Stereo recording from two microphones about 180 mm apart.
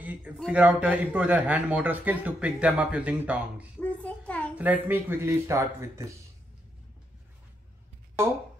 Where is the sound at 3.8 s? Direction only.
10° left (ahead or behind).